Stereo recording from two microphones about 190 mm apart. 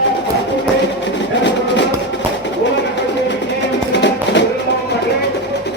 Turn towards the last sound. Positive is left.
turn(degrees=65)  # may be behind; listen again after turning